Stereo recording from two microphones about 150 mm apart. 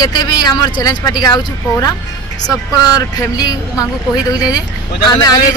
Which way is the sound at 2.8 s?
25° left (ahead or behind).